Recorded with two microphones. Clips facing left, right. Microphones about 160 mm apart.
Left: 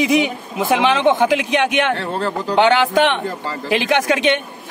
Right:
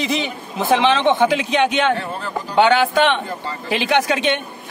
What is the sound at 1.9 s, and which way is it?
Speech, 80° left.